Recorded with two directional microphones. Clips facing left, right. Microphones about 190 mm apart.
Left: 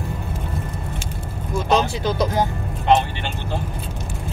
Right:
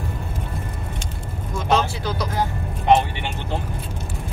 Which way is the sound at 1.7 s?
20° left (ahead or behind).